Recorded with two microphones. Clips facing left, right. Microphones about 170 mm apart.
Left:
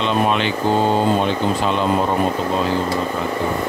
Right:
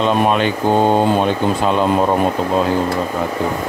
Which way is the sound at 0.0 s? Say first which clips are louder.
Right 3 dB; 45° right (ahead or behind).